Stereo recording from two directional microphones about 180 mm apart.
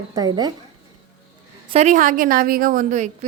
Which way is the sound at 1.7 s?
40° right (ahead or behind).